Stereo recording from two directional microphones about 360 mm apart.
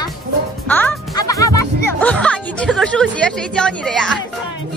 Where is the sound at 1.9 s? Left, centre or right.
Centre.